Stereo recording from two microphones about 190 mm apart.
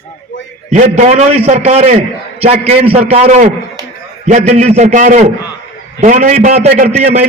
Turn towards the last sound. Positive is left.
turn(degrees=-40)  # may be behind; listen again after turning